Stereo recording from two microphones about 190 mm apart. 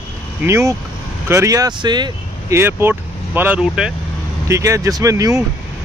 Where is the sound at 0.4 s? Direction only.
15° right (ahead or behind).